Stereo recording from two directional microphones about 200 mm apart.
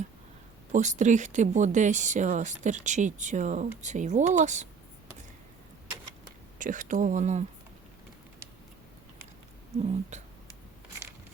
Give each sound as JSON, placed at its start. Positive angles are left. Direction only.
{"t": 0.7, "sound": "speech", "side_deg": -35}
{"t": 6.6, "sound": "speech", "side_deg": -40}
{"t": 9.7, "sound": "speech", "side_deg": -30}